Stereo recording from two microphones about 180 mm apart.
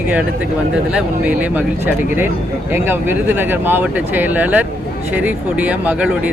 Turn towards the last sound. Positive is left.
turn(degrees=-5)  # may be behind; listen again after turning